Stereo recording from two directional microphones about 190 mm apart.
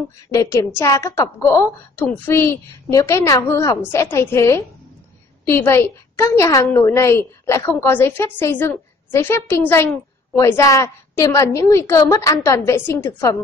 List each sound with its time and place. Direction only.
0.3 s a woman's voice: 15° left (ahead or behind)